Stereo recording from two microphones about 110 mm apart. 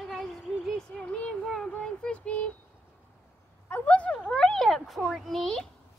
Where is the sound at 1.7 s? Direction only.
10° left (ahead or behind).